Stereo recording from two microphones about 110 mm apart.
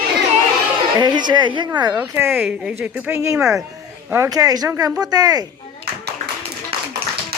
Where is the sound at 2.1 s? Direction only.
20° right (ahead or behind).